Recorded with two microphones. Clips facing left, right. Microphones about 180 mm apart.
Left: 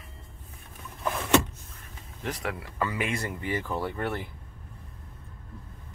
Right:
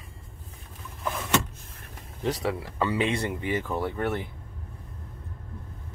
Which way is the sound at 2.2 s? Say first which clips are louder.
Right 5 dB; 30° right (ahead or behind).